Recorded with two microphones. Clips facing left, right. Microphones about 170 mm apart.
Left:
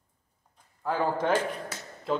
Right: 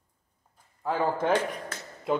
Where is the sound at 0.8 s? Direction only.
Centre (ahead or behind).